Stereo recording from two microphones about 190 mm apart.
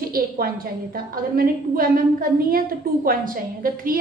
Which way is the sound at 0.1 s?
50° right (ahead or behind).